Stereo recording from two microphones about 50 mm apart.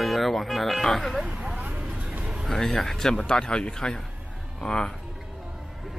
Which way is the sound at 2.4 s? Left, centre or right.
Centre.